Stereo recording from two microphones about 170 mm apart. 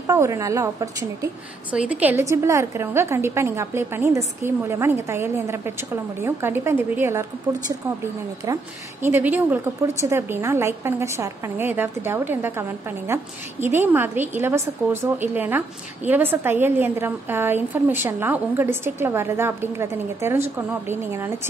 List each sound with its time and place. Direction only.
0.0 s a woman's voice: 15° right (ahead or behind)
1.7 s a woman's voice: 10° right (ahead or behind)
9.0 s a woman's voice: 10° right (ahead or behind)